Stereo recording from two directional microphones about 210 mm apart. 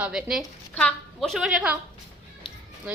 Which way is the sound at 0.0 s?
Centre (ahead or behind).